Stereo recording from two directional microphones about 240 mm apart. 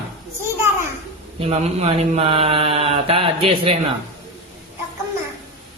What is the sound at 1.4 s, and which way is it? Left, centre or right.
Mantra, right.